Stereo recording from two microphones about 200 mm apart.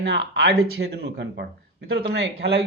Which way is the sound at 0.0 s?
60° right (ahead or behind).